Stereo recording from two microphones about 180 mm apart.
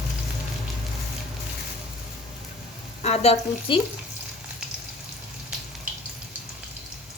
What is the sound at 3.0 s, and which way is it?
Speech, 35° left (ahead or behind).